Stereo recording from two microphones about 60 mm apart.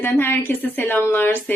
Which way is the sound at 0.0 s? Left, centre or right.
Left.